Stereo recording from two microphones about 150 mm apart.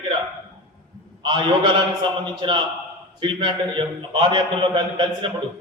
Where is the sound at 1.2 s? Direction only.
35° right (ahead or behind).